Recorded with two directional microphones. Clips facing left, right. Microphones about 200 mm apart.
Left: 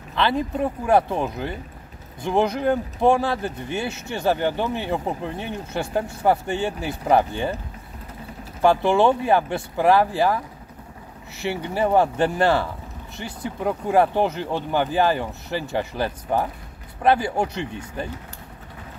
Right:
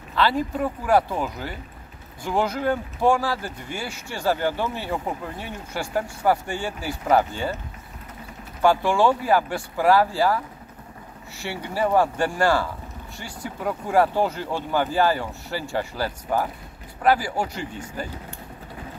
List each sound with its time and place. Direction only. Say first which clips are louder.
0.1 s speech: even; 20° left (ahead or behind)
8.5 s speech: left 2 dB; 20° left (ahead or behind)